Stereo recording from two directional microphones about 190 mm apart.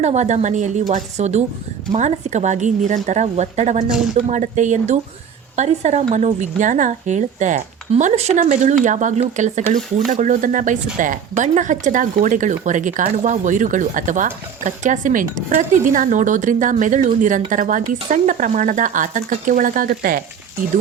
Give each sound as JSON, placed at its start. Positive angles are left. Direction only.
{"t": 0.0, "sound": "a woman's voice", "side_deg": -35}